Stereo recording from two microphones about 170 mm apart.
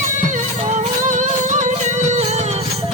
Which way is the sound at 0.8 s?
45° right (ahead or behind).